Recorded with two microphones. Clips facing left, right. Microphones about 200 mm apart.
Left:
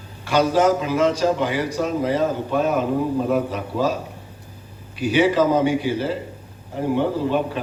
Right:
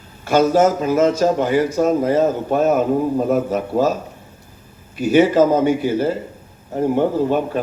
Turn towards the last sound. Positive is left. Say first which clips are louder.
# right 3 dB
turn(degrees=-45)  # may be behind; listen again after turning